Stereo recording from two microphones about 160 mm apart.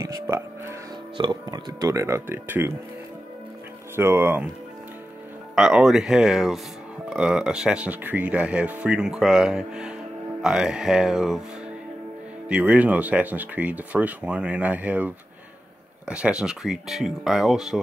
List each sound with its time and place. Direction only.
0.0 s music: 20° right (ahead or behind)
1.1 s speech: 30° right (ahead or behind); by 2.7 s 15° right (ahead or behind)
3.9 s speech: 15° right (ahead or behind)
5.6 s speech: 5° right (ahead or behind)
12.4 s speech: 10° right (ahead or behind)